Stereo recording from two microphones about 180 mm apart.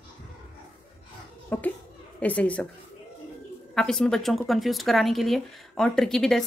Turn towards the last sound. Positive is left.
turn(degrees=5)  # may be behind; listen again after turning